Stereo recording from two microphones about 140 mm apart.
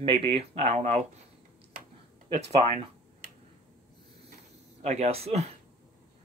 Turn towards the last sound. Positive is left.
turn(degrees=-50)  # may be behind; listen again after turning